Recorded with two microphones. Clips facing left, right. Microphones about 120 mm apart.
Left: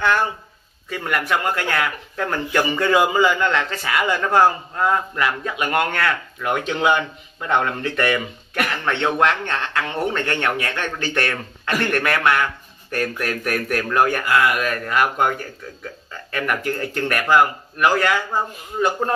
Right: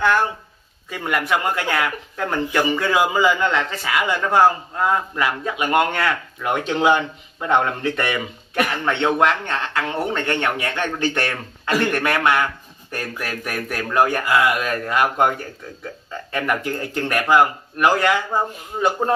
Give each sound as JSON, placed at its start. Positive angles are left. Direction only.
{"t": 0.8, "sound": "speech", "side_deg": -15}
{"t": 6.6, "sound": "speech", "side_deg": -25}
{"t": 11.0, "sound": "speech", "side_deg": -25}
{"t": 11.7, "sound": "speech", "side_deg": -15}